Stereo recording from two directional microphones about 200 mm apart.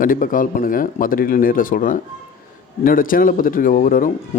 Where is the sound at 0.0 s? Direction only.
45° left (ahead or behind).